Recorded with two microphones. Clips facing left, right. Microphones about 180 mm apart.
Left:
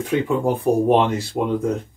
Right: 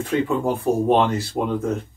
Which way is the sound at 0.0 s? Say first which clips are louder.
Left 1 dB; 15° left (ahead or behind).